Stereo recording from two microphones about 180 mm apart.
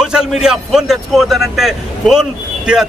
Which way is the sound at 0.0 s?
5° right (ahead or behind).